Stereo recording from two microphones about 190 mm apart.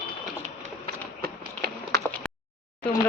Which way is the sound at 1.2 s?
55° right (ahead or behind).